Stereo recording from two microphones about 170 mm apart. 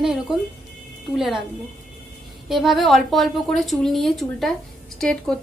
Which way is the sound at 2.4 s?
Centre (ahead or behind).